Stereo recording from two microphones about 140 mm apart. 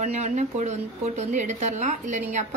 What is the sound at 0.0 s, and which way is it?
A woman's voice, 55° right (ahead or behind).